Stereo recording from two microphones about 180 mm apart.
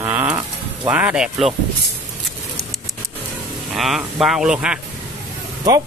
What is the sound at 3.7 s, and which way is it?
Speech, centre (ahead or behind).